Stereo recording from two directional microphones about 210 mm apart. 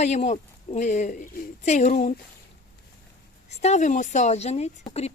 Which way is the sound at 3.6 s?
35° left (ahead or behind).